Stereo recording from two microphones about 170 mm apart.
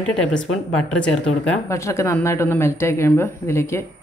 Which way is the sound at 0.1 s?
5° left (ahead or behind).